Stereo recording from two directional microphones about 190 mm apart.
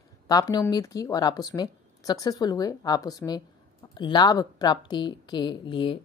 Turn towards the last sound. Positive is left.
turn(degrees=25)  # may be behind; listen again after turning